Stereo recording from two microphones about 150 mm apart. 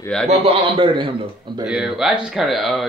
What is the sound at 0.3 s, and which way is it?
Speech, 40° right (ahead or behind).